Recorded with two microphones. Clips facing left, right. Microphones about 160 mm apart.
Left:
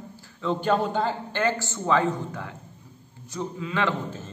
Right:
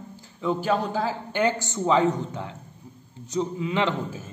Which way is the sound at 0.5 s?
Centre (ahead or behind).